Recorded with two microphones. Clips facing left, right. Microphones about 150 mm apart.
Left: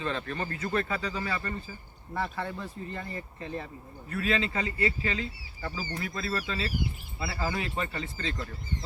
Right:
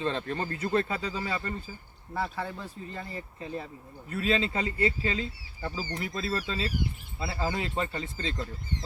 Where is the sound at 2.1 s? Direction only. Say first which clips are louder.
Even; 5° right (ahead or behind).